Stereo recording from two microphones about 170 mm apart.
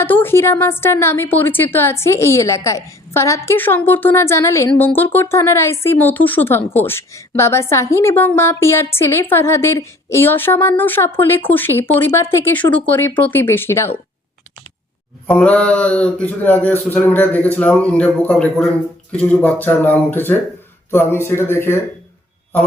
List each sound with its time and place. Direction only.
0.0 s a woman's voice: 10° left (ahead or behind)
15.3 s a woman's voice: 10° left (ahead or behind)